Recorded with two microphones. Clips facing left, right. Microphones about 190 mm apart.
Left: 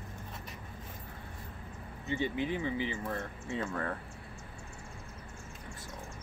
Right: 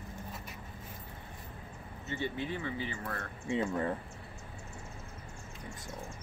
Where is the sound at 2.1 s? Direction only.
15° left (ahead or behind).